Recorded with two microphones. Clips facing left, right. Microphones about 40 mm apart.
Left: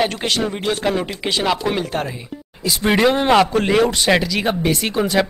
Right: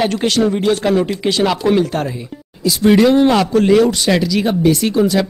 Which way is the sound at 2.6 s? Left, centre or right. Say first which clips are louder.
Right 5 dB; centre.